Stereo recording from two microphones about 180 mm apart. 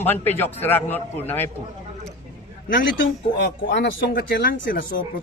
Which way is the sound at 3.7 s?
75° left (ahead or behind).